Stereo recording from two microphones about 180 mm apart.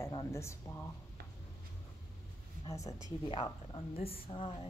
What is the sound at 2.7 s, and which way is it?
Speech, 15° left (ahead or behind).